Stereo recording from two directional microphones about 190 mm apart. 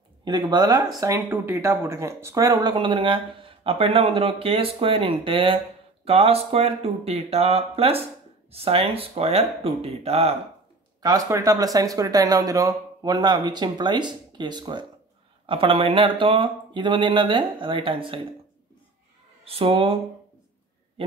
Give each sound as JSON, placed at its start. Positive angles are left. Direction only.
{"t": 0.2, "sound": "speech", "side_deg": -20}
{"t": 11.0, "sound": "speech", "side_deg": -20}
{"t": 19.4, "sound": "speech", "side_deg": -30}